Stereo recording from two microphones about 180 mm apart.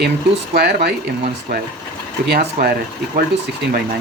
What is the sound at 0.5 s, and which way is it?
Speech, 60° right (ahead or behind).